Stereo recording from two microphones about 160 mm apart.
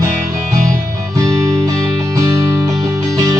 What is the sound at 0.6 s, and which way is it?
Music, 55° right (ahead or behind).